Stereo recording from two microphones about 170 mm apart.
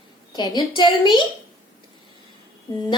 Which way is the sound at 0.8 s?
25° left (ahead or behind).